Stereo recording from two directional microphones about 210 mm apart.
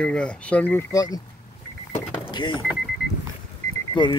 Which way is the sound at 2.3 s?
20° left (ahead or behind).